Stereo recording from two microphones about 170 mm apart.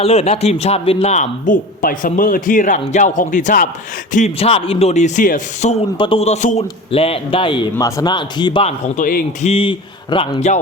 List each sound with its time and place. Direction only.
0.0 s a man's voice: 35° left (ahead or behind)
6.0 s a man's voice: 35° left (ahead or behind)
8.6 s a man's voice: 50° left (ahead or behind)
9.5 s a man's voice: 30° left (ahead or behind)